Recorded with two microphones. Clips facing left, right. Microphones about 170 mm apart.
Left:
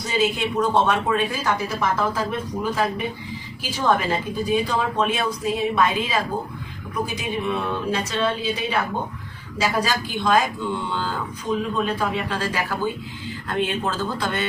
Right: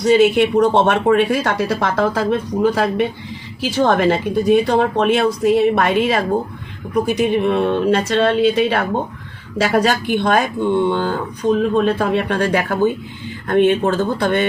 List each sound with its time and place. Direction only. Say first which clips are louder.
0.0 s speech: right 11 dB; 65° right (ahead or behind)